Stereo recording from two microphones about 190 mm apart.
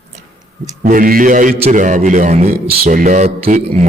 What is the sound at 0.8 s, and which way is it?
A man's voice, 45° right (ahead or behind).